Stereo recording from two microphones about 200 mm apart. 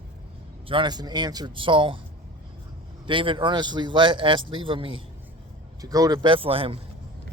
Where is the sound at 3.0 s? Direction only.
25° right (ahead or behind).